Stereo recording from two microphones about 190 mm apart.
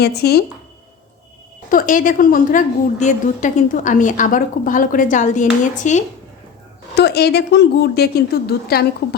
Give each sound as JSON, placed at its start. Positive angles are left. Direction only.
{"t": 0.0, "sound": "a woman's voice", "side_deg": 60}
{"t": 1.7, "sound": "a woman's voice", "side_deg": 45}
{"t": 6.9, "sound": "a woman's voice", "side_deg": 60}